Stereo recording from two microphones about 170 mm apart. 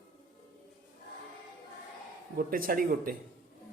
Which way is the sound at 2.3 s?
60° right (ahead or behind).